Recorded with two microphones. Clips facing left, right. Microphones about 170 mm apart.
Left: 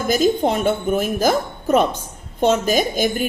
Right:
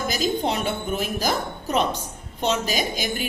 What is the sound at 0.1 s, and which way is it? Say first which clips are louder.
Speech: left 9 dB; 50° left (ahead or behind).